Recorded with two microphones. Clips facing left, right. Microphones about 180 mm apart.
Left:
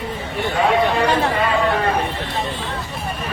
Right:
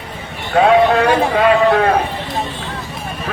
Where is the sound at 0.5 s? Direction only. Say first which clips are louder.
Right 7 dB; 75° right (ahead or behind).